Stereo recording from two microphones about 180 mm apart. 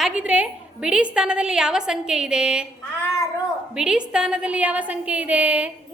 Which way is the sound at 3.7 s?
5° right (ahead or behind).